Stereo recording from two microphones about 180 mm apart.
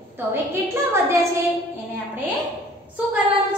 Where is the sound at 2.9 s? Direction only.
10° right (ahead or behind).